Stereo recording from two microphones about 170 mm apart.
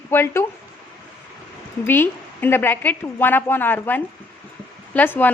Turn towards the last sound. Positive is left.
turn(degrees=10)  # may be behind; listen again after turning